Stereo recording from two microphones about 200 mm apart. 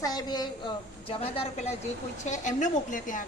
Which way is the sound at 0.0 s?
20° left (ahead or behind).